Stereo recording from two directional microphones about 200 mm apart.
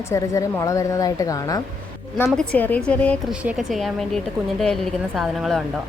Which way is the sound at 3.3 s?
5° right (ahead or behind).